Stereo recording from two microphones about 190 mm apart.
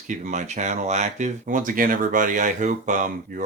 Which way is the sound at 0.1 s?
40° right (ahead or behind).